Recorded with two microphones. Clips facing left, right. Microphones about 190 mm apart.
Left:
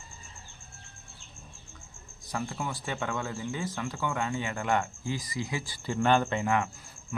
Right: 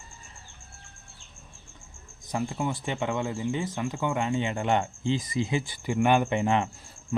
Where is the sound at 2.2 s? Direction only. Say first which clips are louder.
Right 5 dB; 20° right (ahead or behind).